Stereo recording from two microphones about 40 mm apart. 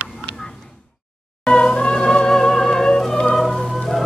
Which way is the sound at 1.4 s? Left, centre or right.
Left.